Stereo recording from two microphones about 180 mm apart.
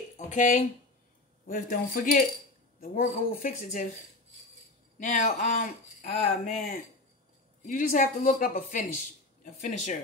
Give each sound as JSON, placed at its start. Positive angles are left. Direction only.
{"t": 0.3, "sound": "speech", "side_deg": 45}